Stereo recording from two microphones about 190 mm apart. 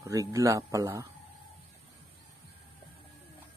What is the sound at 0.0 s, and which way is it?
Speech, 15° right (ahead or behind).